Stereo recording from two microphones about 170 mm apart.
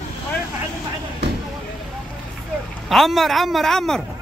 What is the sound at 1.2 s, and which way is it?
Vehicle, 80° right.